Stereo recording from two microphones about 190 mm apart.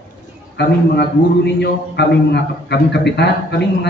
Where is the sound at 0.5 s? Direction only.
60° left (ahead or behind).